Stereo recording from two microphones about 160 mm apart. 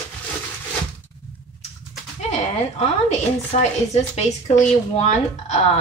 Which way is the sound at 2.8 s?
45° left (ahead or behind).